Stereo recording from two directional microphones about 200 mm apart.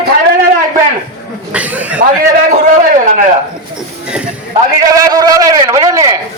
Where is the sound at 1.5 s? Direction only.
5° right (ahead or behind).